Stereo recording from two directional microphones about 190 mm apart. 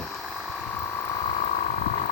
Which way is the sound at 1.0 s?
25° left (ahead or behind).